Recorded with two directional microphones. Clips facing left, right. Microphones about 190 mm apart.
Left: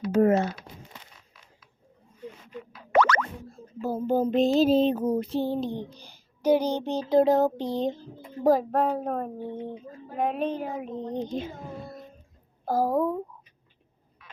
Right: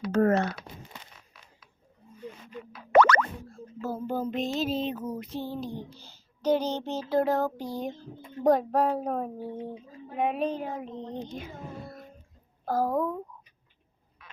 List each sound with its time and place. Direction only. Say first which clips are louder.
0.1 s speech: left 2 dB; 15° left (ahead or behind)
2.9 s boing: right 2 dB; 55° right (ahead or behind)
3.8 s child singing: left 6 dB; 15° left (ahead or behind)
8.4 s speech: left 1 dB; centre (ahead or behind)
12.6 s speech: left 3 dB; 10° left (ahead or behind)